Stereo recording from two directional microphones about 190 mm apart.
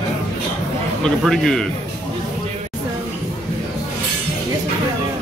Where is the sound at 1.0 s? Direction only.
Centre (ahead or behind).